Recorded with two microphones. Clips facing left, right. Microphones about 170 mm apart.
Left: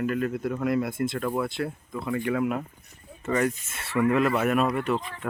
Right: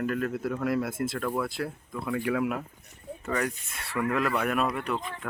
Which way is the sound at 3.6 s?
Centre (ahead or behind).